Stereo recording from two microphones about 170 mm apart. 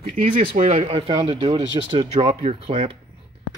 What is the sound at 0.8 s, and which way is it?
Speech, 30° right (ahead or behind).